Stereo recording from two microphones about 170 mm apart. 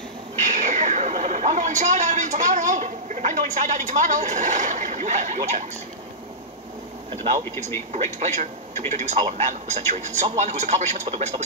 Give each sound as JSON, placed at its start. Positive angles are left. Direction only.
{"t": 0.4, "sound": "a woman's voice", "side_deg": -45}
{"t": 7.9, "sound": "a man's voice", "side_deg": -40}